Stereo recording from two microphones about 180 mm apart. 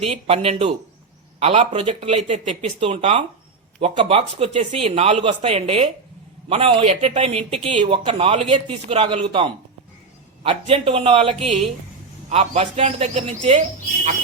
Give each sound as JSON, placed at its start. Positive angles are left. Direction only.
{"t": 0.0, "sound": "speech", "side_deg": -35}